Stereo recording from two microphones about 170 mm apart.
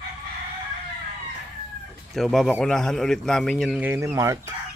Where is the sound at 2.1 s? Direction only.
Centre (ahead or behind).